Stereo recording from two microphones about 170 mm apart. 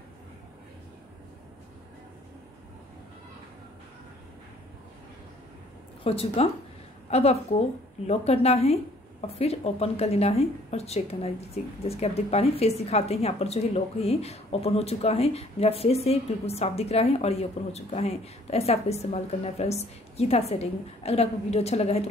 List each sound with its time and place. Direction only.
6.0 s a woman's voice: 35° left (ahead or behind)